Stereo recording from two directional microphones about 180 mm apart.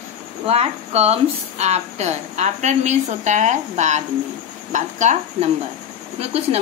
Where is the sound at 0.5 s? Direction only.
35° right (ahead or behind).